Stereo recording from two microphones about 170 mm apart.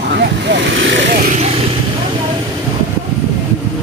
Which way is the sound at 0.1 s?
85° right.